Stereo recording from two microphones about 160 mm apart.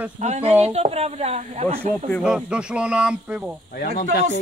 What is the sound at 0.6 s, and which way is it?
Speech, 40° right (ahead or behind).